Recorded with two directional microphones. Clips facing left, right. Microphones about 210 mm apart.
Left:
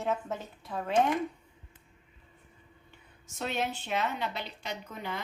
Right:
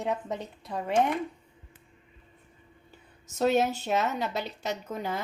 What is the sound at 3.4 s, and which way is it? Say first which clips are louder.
Speech: right 9 dB; 40° right (ahead or behind).